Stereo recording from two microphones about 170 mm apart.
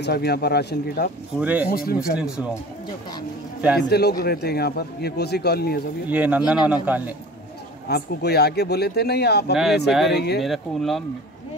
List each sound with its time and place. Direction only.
0.0 s speech: 70° left (ahead or behind)
1.4 s speech: 10° right (ahead or behind)
1.7 s speech: 60° left (ahead or behind)
2.1 s speech: 5° right (ahead or behind)
3.7 s speech: 70° left (ahead or behind)
6.0 s speech: 10° right (ahead or behind)
7.9 s speech: 70° left (ahead or behind)
9.8 s speech: centre (ahead or behind)
10.1 s speech: 75° left (ahead or behind)
10.4 s speech: centre (ahead or behind)